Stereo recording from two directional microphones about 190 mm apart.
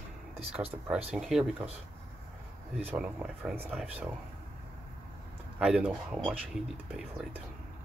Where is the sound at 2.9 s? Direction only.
5° right (ahead or behind).